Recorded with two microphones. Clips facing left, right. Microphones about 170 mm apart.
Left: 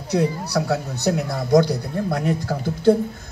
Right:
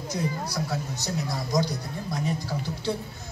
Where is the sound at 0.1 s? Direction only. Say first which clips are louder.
Left 10 dB; 70° left (ahead or behind).